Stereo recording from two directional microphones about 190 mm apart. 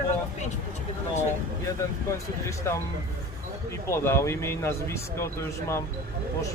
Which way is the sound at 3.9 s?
15° left (ahead or behind).